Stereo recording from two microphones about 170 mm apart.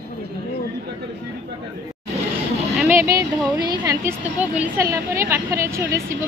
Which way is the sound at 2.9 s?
15° right (ahead or behind).